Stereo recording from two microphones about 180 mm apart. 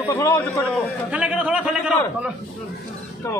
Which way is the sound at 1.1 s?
5° right (ahead or behind).